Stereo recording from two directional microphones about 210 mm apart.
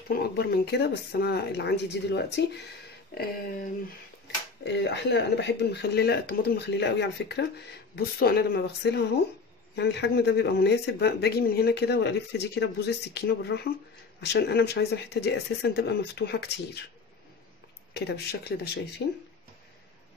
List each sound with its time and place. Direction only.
0.1 s speech: 50° left (ahead or behind)
4.6 s speech: 55° left (ahead or behind)
17.9 s speech: 50° left (ahead or behind)